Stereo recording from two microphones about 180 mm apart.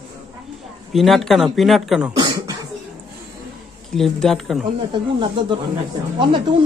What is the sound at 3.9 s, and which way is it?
Speech, centre (ahead or behind).